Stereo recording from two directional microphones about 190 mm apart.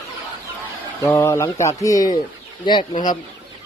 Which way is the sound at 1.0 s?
15° left (ahead or behind).